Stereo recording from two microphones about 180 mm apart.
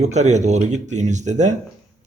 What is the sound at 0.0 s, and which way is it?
Speech, 40° right (ahead or behind).